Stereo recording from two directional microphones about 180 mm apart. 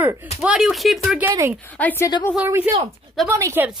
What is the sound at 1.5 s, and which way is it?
Speech, 10° left (ahead or behind).